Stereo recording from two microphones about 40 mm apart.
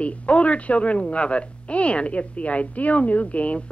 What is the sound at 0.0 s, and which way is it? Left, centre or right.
A child's voice, left.